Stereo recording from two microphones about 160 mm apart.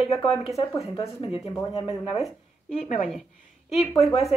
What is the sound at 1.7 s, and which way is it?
Speech, 35° left (ahead or behind).